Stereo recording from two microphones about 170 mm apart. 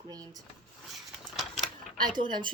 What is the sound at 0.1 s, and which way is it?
Speech, 20° right (ahead or behind).